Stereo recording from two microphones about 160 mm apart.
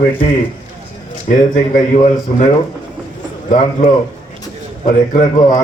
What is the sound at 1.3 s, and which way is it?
Speech, 50° left (ahead or behind).